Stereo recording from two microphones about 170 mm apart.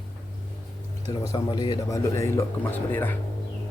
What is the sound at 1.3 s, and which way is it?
Speech, 25° left (ahead or behind).